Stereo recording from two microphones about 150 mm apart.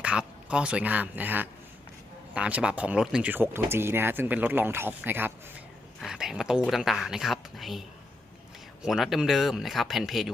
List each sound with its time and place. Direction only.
0.0 s speech: 10° right (ahead or behind)
6.0 s a sound: 5° right (ahead or behind)
6.7 s speech: centre (ahead or behind)